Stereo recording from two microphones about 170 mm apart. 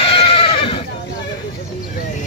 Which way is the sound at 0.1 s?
30° left (ahead or behind).